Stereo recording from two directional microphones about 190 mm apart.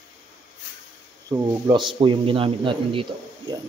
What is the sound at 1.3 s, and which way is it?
A man's voice, 20° right (ahead or behind).